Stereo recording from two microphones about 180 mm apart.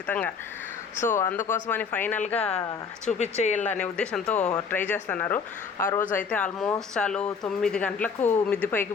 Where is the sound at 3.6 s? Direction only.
10° left (ahead or behind).